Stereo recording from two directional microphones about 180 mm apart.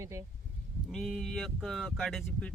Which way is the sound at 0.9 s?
Centre (ahead or behind).